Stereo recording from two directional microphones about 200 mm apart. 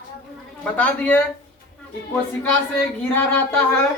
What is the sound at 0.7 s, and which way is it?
Speech, 5° left (ahead or behind).